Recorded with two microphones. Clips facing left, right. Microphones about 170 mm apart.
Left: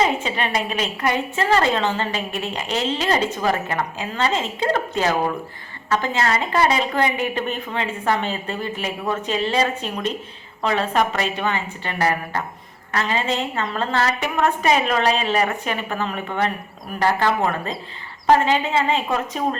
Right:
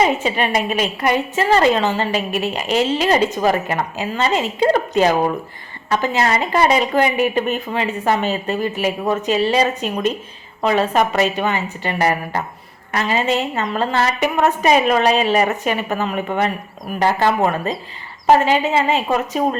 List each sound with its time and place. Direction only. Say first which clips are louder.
0.2 s a woman's voice: right 4 dB; 15° right (ahead or behind)